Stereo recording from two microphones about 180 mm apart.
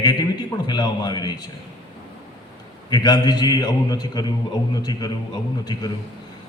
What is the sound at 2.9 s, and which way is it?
A man's voice, 20° left (ahead or behind).